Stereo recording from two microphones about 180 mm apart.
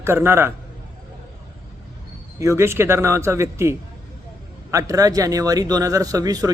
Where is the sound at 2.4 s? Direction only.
15° right (ahead or behind).